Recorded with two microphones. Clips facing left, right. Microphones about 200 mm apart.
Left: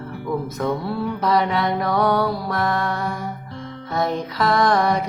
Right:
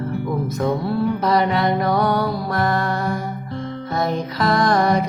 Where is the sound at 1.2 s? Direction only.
Centre (ahead or behind).